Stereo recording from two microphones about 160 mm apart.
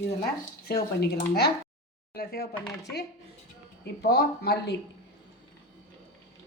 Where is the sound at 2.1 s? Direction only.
70° left (ahead or behind).